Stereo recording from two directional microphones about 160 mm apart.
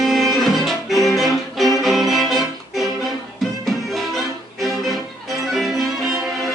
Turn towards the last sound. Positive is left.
turn(degrees=0)  # may be behind; listen again after turning